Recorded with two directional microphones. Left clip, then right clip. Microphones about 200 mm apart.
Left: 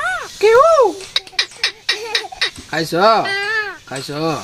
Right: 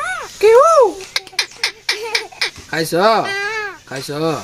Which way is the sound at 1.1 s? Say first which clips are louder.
Left 1 dB; 15° right (ahead or behind).